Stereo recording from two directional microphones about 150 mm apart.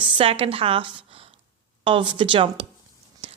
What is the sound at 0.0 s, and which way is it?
A woman's voice, 35° right (ahead or behind).